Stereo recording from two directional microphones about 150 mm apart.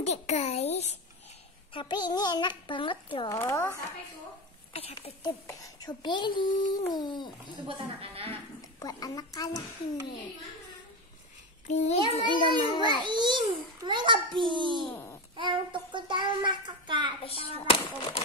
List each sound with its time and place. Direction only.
0.0 s a child's voice: 45° left (ahead or behind)
1.7 s a child's voice: 30° left (ahead or behind)
3.3 s a child's voice: 20° left (ahead or behind)
4.7 s a child's voice: 40° left (ahead or behind)
5.2 s a child's voice: 25° left (ahead or behind)
7.6 s a child's voice: 35° right (ahead or behind)
8.7 s a child's voice: 25° left (ahead or behind)
11.6 s a child's voice: 50° left (ahead or behind)
12.1 s a child's voice: 30° left (ahead or behind)
12.8 s a child's voice: 30° right (ahead or behind)
14.9 s babbling: 15° left (ahead or behind)
15.3 s a child's voice: 35° right (ahead or behind)
17.2 s a child's voice: 40° left (ahead or behind)